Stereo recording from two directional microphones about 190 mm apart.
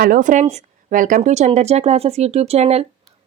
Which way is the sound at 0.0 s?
45° right (ahead or behind).